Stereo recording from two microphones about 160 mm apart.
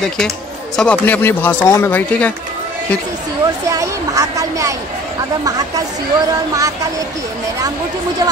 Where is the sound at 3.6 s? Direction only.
20° right (ahead or behind).